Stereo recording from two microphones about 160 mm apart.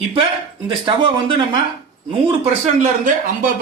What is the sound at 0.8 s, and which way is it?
Speech, 30° right (ahead or behind).